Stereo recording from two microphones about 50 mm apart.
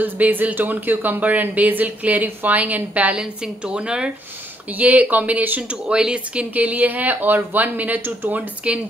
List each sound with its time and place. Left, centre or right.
0.0 s speech: right
3.6 s speech: centre
4.7 s speech: right
5.6 s speech: right
8.6 s speech: right